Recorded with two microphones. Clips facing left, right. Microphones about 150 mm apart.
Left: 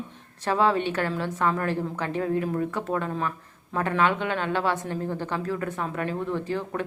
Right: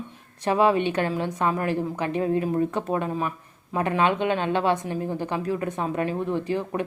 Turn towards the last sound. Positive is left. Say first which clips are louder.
# right 3 dB
turn(degrees=-15)  # may be behind; listen again after turning